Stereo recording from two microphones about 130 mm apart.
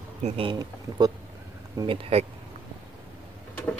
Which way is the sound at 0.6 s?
30° right (ahead or behind).